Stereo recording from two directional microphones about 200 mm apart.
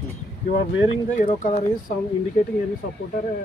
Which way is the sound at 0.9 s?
40° left (ahead or behind).